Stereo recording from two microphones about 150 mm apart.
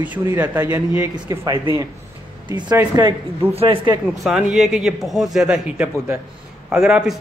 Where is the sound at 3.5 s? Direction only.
40° right (ahead or behind).